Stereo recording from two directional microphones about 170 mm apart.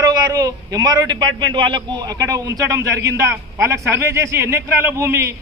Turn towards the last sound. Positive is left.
turn(degrees=-15)  # may be behind; listen again after turning